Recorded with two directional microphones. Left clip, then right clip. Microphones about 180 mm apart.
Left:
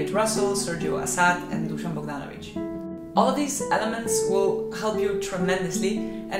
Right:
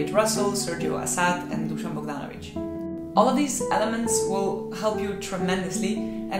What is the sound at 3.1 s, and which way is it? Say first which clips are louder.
Speech: right 1 dB; 25° right (ahead or behind).